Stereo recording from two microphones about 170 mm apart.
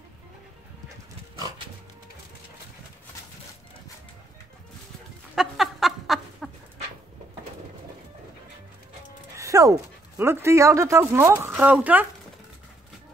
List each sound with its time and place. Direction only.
5.3 s chicken: 5° right (ahead or behind)
9.4 s speech: 20° right (ahead or behind)